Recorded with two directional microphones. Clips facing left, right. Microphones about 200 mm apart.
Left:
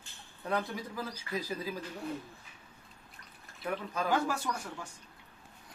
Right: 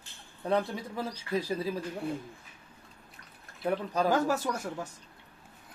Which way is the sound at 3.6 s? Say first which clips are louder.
Right 6 dB; 35° right (ahead or behind).